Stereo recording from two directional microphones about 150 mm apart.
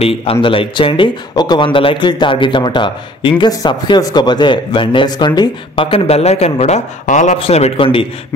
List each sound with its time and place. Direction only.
0.0 s speech: 40° left (ahead or behind)
7.3 s speech: 40° left (ahead or behind)